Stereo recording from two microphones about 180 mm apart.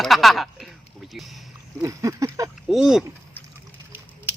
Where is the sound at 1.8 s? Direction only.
15° right (ahead or behind).